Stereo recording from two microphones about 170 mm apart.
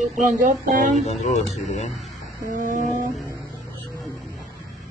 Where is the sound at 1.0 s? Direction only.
40° left (ahead or behind).